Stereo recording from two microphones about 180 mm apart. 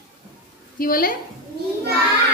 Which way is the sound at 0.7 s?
50° left (ahead or behind).